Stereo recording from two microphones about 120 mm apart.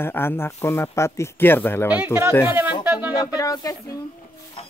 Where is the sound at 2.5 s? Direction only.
15° right (ahead or behind).